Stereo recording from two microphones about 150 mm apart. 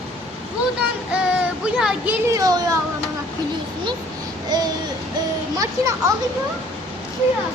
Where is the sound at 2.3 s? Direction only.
20° right (ahead or behind).